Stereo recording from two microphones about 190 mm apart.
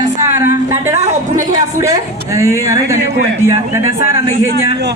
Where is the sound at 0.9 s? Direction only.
40° right (ahead or behind).